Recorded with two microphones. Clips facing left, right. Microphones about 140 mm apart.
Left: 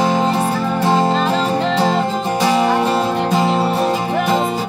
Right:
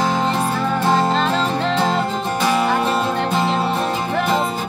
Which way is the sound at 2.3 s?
20° left (ahead or behind).